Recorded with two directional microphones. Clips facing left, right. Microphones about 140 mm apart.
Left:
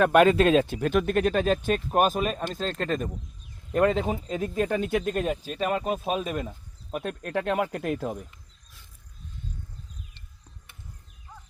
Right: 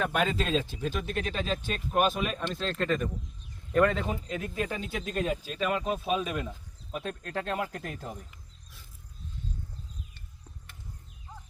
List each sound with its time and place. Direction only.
0.0 s speech: 65° left (ahead or behind); by 6.5 s 40° left (ahead or behind)
6.9 s speech: 55° left (ahead or behind)